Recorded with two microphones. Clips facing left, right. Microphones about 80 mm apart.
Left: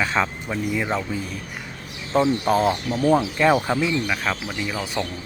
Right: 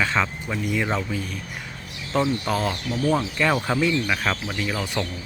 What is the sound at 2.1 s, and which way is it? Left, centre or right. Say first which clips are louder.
Speech: left 4 dB; left.